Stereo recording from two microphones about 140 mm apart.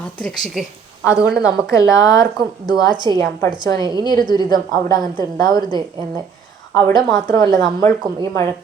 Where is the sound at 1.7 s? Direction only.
25° left (ahead or behind).